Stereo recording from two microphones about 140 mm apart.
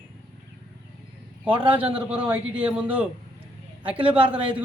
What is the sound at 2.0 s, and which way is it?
Speech, 10° right (ahead or behind).